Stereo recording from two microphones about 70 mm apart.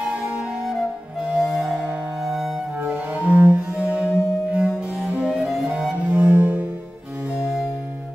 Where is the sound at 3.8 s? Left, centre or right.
Right.